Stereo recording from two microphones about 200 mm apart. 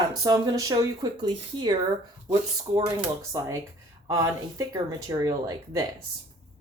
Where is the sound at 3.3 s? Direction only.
15° right (ahead or behind).